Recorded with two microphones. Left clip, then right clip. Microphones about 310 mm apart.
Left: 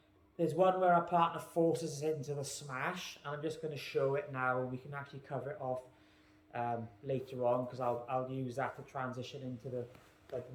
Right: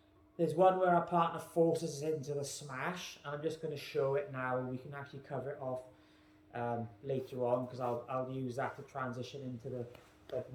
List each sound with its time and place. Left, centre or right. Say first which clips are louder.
0.3 s a man's voice: right 2 dB; centre
6.5 s a man's voice: left 1 dB; centre
10.3 s speech: right 2 dB; right